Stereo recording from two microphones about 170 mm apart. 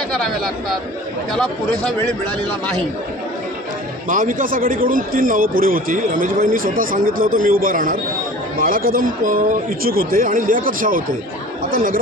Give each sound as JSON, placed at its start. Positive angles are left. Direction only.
{"t": 1.3, "sound": "speech", "side_deg": 5}
{"t": 4.1, "sound": "a man's voice", "side_deg": -50}